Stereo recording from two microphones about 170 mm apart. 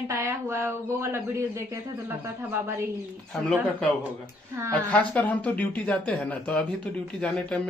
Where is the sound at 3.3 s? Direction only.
Centre (ahead or behind).